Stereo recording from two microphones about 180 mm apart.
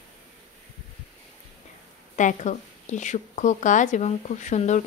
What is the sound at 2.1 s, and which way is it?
Speech, 45° left (ahead or behind).